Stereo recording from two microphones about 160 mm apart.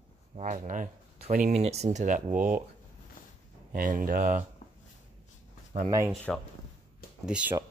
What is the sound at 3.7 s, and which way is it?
Speech, 60° right (ahead or behind).